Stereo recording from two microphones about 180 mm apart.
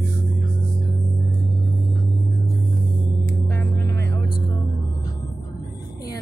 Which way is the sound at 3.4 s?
15° left (ahead or behind).